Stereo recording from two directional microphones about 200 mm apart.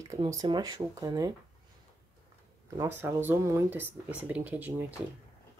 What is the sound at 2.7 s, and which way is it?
Speech, 15° right (ahead or behind).